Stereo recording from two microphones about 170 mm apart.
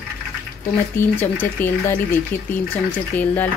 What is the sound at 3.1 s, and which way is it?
Speech, 10° left (ahead or behind).